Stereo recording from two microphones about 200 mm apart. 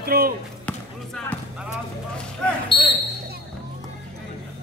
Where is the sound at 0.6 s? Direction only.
5° left (ahead or behind).